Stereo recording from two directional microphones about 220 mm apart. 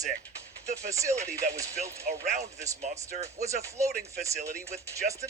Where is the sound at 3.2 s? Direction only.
15° right (ahead or behind).